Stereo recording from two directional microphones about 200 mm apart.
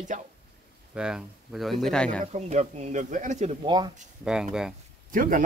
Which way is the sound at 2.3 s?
35° right (ahead or behind).